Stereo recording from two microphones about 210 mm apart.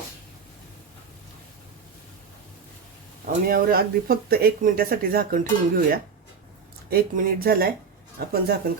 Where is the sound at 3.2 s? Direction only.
45° right (ahead or behind).